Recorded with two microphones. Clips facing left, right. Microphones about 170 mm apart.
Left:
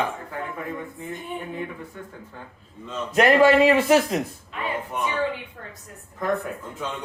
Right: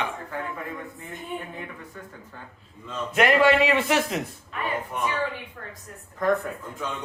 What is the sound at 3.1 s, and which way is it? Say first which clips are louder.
A man's voice: left 3 dB; 35° left (ahead or behind).